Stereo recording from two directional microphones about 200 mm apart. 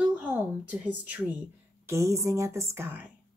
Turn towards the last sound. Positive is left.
turn(degrees=-10)  # may be behind; listen again after turning